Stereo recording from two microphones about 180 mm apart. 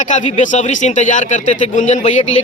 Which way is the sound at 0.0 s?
45° left (ahead or behind).